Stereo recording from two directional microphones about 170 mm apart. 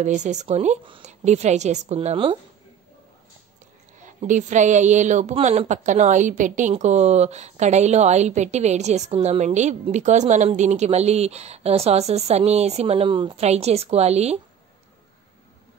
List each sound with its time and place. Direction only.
0.0 s speech: 45° right (ahead or behind)
4.0 s speech: 45° right (ahead or behind)